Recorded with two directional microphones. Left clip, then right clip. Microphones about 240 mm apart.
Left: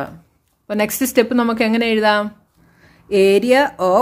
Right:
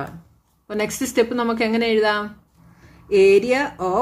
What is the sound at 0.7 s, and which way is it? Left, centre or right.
Speech, left.